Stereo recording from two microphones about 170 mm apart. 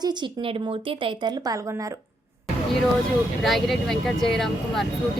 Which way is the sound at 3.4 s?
Centre (ahead or behind).